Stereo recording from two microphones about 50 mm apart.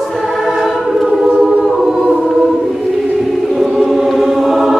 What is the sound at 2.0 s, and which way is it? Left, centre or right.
Choir, centre.